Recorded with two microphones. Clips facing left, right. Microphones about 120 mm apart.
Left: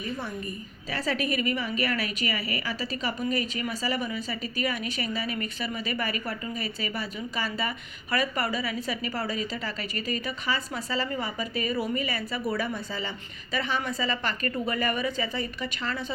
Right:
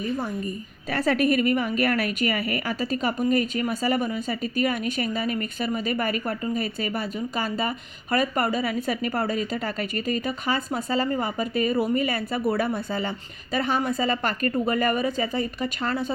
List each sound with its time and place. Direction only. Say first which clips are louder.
0.9 s a woman's voice: right 7 dB; 55° right (ahead or behind)